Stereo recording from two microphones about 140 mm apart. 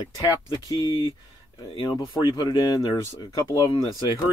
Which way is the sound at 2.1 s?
30° left (ahead or behind).